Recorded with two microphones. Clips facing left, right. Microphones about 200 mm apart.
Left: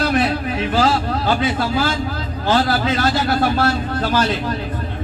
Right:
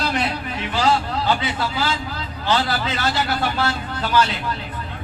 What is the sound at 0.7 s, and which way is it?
A man's voice, 45° left (ahead or behind).